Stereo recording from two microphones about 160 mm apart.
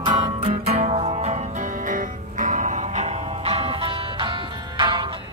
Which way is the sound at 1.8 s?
55° right (ahead or behind).